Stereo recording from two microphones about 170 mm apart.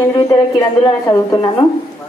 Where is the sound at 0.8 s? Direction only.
20° left (ahead or behind).